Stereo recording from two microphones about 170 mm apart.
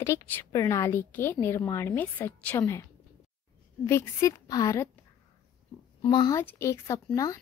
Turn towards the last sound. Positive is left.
turn(degrees=20)  # may be behind; listen again after turning